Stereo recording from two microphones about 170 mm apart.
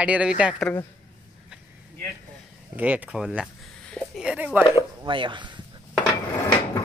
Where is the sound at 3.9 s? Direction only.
Centre (ahead or behind).